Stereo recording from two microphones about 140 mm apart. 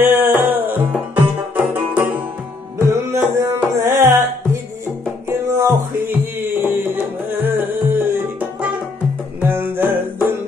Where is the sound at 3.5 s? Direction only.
20° right (ahead or behind).